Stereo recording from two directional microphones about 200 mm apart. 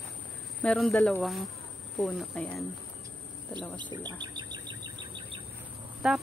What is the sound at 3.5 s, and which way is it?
Speech, 25° right (ahead or behind).